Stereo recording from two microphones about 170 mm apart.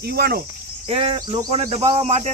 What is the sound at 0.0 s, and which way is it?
Cricket, 70° right (ahead or behind).